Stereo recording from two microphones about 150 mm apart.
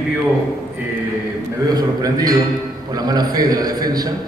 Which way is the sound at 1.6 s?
25° right (ahead or behind).